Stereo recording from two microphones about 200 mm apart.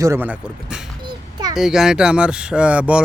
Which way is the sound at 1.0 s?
20° right (ahead or behind).